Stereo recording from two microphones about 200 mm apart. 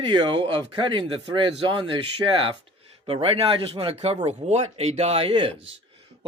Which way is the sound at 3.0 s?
30° right (ahead or behind).